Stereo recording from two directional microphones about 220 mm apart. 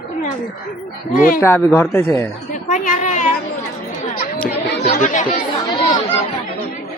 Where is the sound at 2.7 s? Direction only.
35° left (ahead or behind).